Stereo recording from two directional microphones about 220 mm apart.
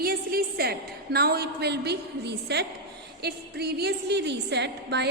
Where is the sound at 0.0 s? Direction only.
45° right (ahead or behind).